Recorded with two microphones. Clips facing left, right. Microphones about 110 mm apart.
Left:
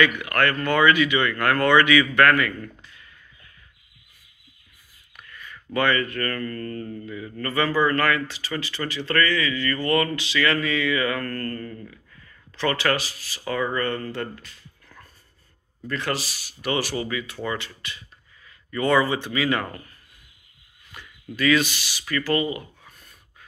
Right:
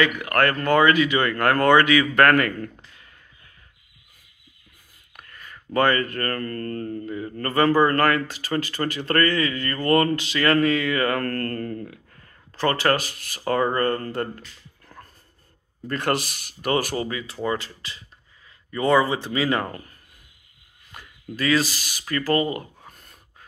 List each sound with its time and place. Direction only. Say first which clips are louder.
0.0 s speech: right 1 dB; 35° right (ahead or behind)
5.1 s speech: left 1 dB; 40° right (ahead or behind)
7.1 s speech: right 2 dB; 40° right (ahead or behind); by 12.0 s 60° right (ahead or behind)
12.1 s speech: even; 45° right (ahead or behind)
15.9 s speech: right 3 dB; 50° right (ahead or behind); by 19.8 s 30° right (ahead or behind)
20.9 s speech: right 1 dB; 35° right (ahead or behind)